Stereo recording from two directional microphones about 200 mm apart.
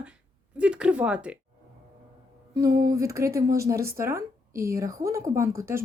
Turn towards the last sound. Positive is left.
turn(degrees=-15)  # may be behind; listen again after turning